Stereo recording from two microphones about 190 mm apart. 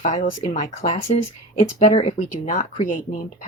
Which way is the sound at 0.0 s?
40° left (ahead or behind).